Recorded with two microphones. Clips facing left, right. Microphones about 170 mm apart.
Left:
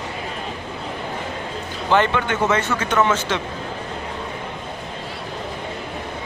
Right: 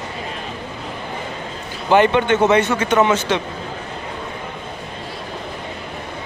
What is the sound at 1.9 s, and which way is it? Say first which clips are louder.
A man's voice: right 5 dB; 20° right (ahead or behind).